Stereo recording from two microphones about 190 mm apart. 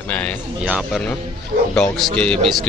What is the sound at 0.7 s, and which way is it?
Speech, 5° right (ahead or behind).